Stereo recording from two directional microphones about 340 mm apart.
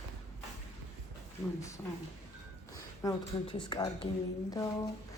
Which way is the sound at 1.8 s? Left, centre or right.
Centre.